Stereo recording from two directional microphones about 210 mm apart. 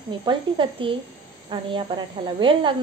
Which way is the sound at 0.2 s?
25° right (ahead or behind).